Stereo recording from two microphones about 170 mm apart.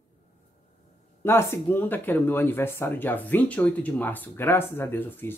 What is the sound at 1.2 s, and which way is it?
Speech, 15° left (ahead or behind).